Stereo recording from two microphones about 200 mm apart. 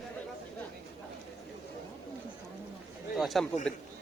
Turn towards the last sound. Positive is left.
turn(degrees=5)  # may be behind; listen again after turning